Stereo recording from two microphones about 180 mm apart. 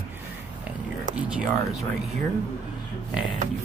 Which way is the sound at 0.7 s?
5° right (ahead or behind).